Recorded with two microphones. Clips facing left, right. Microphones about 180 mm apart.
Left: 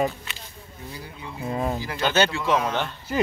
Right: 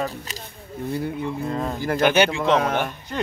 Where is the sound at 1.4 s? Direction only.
10° left (ahead or behind).